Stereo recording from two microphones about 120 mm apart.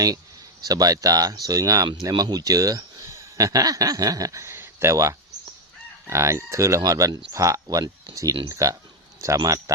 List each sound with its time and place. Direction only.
0.6 s speech: 30° right (ahead or behind)